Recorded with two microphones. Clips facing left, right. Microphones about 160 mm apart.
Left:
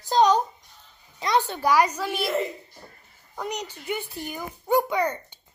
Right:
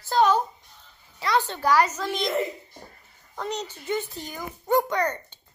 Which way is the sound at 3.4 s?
10° left (ahead or behind).